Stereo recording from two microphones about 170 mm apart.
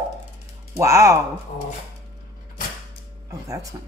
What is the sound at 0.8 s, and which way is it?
Speech, 15° right (ahead or behind).